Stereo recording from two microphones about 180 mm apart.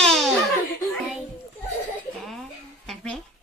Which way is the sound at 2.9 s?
Centre (ahead or behind).